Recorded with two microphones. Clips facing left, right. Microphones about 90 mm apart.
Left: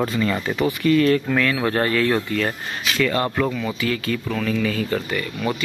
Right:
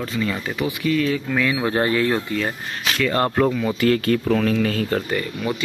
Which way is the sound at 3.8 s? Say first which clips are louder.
Right 6 dB; 55° right (ahead or behind).